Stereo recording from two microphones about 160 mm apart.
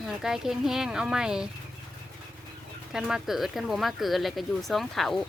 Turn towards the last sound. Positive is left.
turn(degrees=0)  # may be behind; listen again after turning